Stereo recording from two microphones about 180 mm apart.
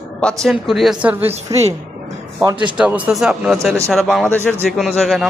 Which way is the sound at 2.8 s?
10° right (ahead or behind).